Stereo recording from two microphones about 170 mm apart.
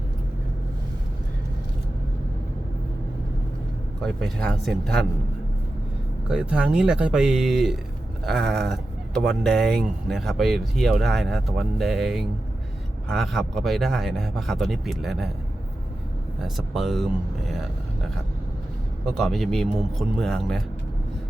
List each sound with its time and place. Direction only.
4.0 s speech: centre (ahead or behind)
6.2 s speech: 5° right (ahead or behind)
16.4 s speech: centre (ahead or behind)
19.0 s speech: centre (ahead or behind)